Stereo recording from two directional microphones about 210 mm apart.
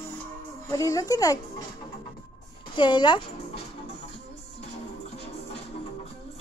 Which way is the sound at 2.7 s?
20° left (ahead or behind).